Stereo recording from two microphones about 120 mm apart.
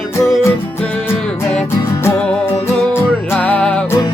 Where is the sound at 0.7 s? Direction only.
15° left (ahead or behind).